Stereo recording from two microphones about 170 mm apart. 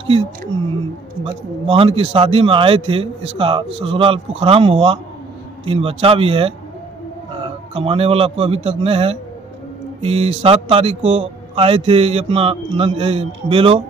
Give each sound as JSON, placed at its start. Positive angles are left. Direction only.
{"t": 1.2, "sound": "a man's voice", "side_deg": -35}